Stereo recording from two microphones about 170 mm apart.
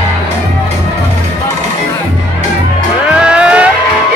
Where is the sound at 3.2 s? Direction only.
5° right (ahead or behind).